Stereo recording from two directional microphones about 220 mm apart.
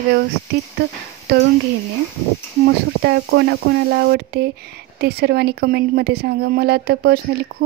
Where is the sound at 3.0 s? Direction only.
50° right (ahead or behind).